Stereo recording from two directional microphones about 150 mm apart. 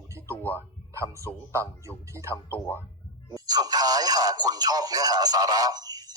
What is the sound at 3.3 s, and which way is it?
Speech, 25° right (ahead or behind).